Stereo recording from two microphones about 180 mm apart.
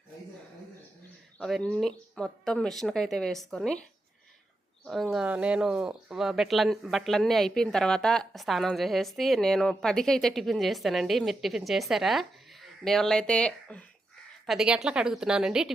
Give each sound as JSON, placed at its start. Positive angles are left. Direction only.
{"t": 1.4, "sound": "speech", "side_deg": 0}
{"t": 5.1, "sound": "speech", "side_deg": -5}